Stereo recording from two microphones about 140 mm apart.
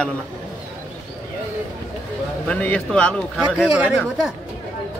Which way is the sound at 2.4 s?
10° left (ahead or behind).